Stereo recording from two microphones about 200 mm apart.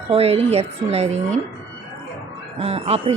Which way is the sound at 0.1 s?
30° right (ahead or behind).